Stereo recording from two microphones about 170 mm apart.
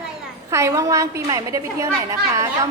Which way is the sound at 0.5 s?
20° right (ahead or behind).